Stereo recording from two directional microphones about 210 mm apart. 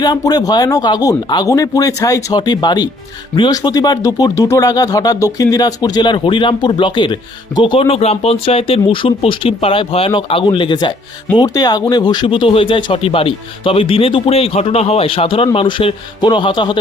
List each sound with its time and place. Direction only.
0.0 s speech: 20° left (ahead or behind)